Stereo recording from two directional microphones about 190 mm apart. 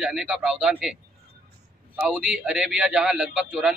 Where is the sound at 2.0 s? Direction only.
5° right (ahead or behind).